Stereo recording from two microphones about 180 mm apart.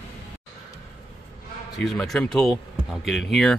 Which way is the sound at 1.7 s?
Centre (ahead or behind).